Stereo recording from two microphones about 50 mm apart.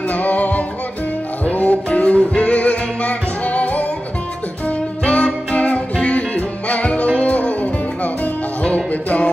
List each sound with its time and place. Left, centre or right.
0.1 s music: left